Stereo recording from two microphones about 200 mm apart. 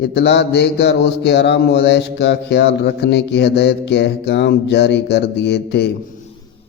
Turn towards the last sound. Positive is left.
turn(degrees=55)  # may be behind; listen again after turning